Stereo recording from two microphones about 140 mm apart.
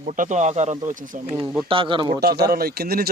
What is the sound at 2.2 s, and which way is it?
Speech, 90° right.